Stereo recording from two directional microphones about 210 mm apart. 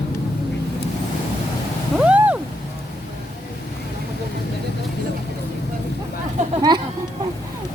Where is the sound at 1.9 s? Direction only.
5° right (ahead or behind).